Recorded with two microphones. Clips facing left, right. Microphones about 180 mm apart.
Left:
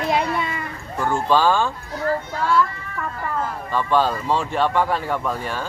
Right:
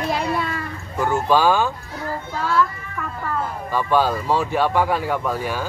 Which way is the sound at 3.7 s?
10° right (ahead or behind).